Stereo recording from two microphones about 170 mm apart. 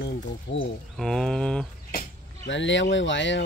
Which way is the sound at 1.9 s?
75° left (ahead or behind).